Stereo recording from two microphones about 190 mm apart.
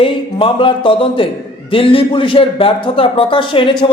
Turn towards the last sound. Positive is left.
turn(degrees=25)  # may be behind; listen again after turning